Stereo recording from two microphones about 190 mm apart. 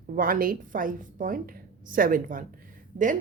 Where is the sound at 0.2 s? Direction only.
50° right (ahead or behind).